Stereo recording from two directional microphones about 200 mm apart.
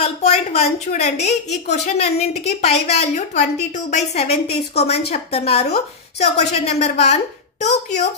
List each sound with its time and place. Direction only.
0.0 s a woman's voice: 30° left (ahead or behind)